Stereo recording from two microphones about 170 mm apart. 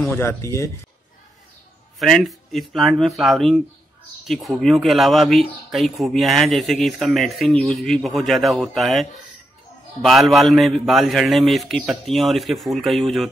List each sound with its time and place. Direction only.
0.0 s speech: 10° left (ahead or behind)
2.0 s speech: centre (ahead or behind)
10.0 s speech: centre (ahead or behind)